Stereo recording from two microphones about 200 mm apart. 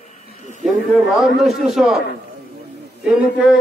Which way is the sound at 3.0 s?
5° right (ahead or behind).